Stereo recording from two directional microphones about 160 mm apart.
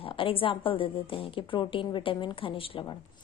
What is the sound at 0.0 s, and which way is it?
A woman's voice, 35° left (ahead or behind).